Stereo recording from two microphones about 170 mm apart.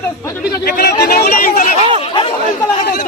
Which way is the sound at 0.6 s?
65° left (ahead or behind).